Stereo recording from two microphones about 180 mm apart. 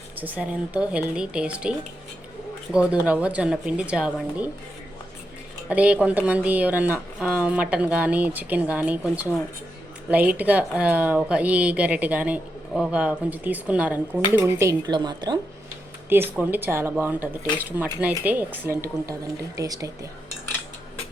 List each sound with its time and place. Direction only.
0.2 s speech: 10° right (ahead or behind)
2.7 s speech: 5° right (ahead or behind)
5.6 s speech: 5° right (ahead or behind); by 15.4 s 25° right (ahead or behind)
16.0 s speech: 10° right (ahead or behind)